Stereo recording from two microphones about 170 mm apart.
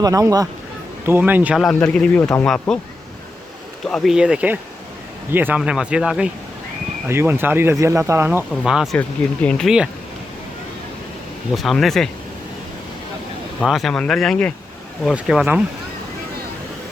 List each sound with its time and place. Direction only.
0.0 s speech: 20° right (ahead or behind); by 2.7 s 5° left (ahead or behind)
3.8 s speech: centre (ahead or behind)
11.5 s speech: centre (ahead or behind)
13.6 s speech: centre (ahead or behind)